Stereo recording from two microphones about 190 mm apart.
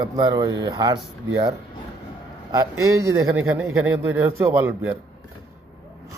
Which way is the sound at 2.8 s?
15° right (ahead or behind).